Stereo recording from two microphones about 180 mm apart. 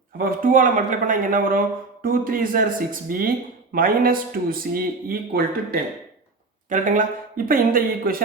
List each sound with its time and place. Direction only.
0.2 s a man's voice: 50° right (ahead or behind)
6.7 s a man's voice: 45° right (ahead or behind)